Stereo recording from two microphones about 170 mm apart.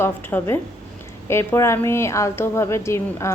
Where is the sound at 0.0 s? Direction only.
10° left (ahead or behind).